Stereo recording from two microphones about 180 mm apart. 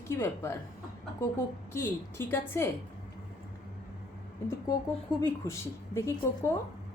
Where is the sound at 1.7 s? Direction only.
15° left (ahead or behind).